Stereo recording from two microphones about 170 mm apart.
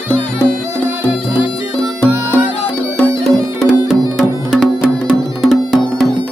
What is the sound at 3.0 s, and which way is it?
Music, 5° left (ahead or behind).